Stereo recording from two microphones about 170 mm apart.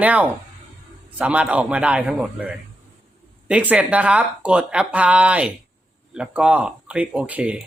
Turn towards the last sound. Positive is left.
turn(degrees=-10)  # may be behind; listen again after turning